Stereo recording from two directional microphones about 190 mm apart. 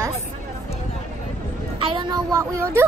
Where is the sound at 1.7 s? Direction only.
25° right (ahead or behind).